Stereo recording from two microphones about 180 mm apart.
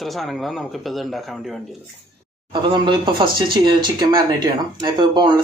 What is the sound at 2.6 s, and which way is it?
Speech, 25° right (ahead or behind).